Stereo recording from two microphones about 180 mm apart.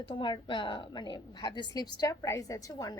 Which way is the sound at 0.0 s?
30° left (ahead or behind).